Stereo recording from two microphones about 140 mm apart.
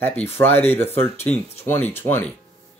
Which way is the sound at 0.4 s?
15° left (ahead or behind).